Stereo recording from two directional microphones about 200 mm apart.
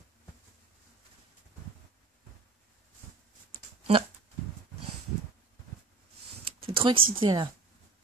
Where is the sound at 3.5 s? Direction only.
30° right (ahead or behind).